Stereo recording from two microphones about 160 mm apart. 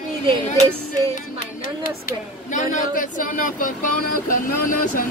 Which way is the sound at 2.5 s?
55° left (ahead or behind).